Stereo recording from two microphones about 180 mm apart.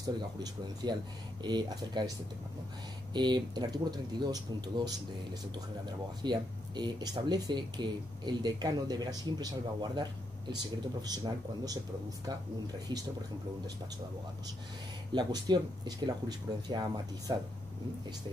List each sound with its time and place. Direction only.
0.0 s speech: 20° right (ahead or behind)
15.1 s speech: 25° right (ahead or behind)